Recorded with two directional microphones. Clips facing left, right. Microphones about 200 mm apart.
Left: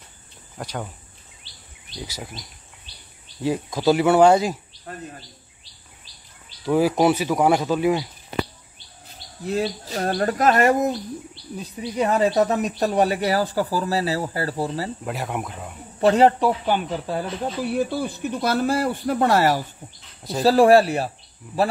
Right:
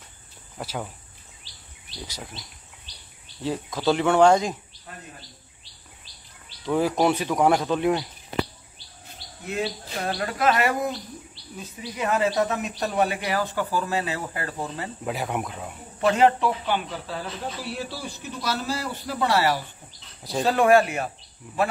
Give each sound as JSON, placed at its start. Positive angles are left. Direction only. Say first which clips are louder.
{"t": 0.6, "sound": "speech", "louder": "left 1 dB", "side_deg": -5}
{"t": 1.5, "sound": "bird vocalization", "louder": "left 2 dB", "side_deg": -40}
{"t": 3.4, "sound": "speech", "louder": "left 4 dB", "side_deg": 10}
{"t": 6.6, "sound": "speech", "louder": "left 4 dB", "side_deg": 5}
{"t": 9.4, "sound": "speech", "louder": "left 5 dB", "side_deg": 35}
{"t": 12.0, "sound": "speech", "louder": "left 4 dB", "side_deg": 35}
{"t": 15.0, "sound": "speech", "louder": "even", "side_deg": 0}
{"t": 16.0, "sound": "speech", "louder": "left 4 dB", "side_deg": 35}
{"t": 20.2, "sound": "speech", "louder": "even", "side_deg": 0}
{"t": 20.4, "sound": "speech", "louder": "left 5 dB", "side_deg": 35}